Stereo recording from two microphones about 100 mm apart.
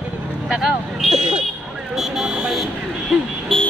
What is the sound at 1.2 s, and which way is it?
Speech, 75° right (ahead or behind).